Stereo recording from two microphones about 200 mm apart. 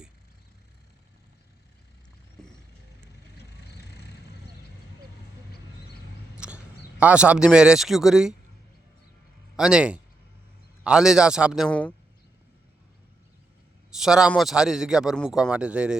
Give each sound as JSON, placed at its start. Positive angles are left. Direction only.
{"t": 2.4, "sound": "vehicle", "side_deg": 5}
{"t": 3.3, "sound": "vehicle", "side_deg": 55}
{"t": 6.3, "sound": "a sound", "side_deg": -5}
{"t": 7.0, "sound": "a man's voice", "side_deg": -5}
{"t": 9.6, "sound": "a man's voice", "side_deg": -5}
{"t": 13.9, "sound": "a man's voice", "side_deg": -5}